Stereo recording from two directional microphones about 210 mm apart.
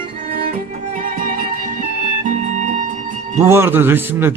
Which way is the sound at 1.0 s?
40° right (ahead or behind).